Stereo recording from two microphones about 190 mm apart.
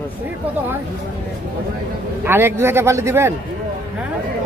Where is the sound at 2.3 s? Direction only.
10° right (ahead or behind).